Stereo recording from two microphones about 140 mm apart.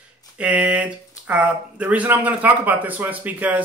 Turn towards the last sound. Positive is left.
turn(degrees=-10)  # may be behind; listen again after turning